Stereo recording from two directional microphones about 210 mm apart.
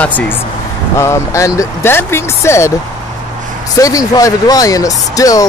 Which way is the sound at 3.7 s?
15° left (ahead or behind).